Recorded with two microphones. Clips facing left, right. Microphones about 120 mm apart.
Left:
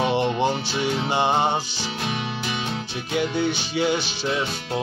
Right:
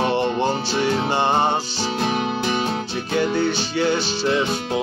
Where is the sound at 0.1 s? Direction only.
10° left (ahead or behind).